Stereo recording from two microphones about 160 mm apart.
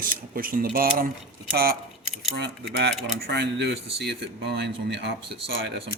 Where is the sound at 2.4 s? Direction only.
90° right.